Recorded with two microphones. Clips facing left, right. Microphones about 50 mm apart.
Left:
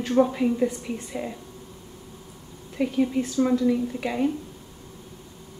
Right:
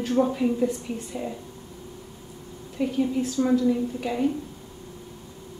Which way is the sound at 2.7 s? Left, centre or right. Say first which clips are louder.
Left 1 dB; left.